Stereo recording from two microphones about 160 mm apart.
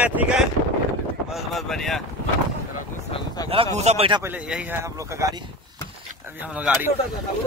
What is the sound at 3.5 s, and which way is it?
Speech, 40° right (ahead or behind).